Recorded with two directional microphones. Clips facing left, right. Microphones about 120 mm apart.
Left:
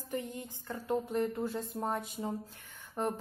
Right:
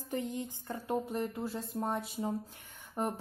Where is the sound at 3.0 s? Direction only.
10° right (ahead or behind).